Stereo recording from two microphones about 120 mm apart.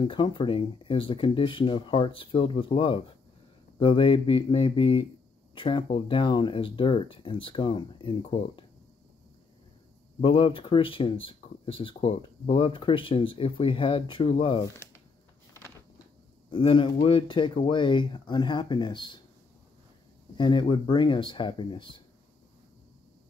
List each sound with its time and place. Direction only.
0.0 s speech: 45° left (ahead or behind)
10.2 s speech: 45° left (ahead or behind)
14.6 s speech: 20° left (ahead or behind)
16.4 s speech: 45° left (ahead or behind)
20.3 s speech: 40° left (ahead or behind)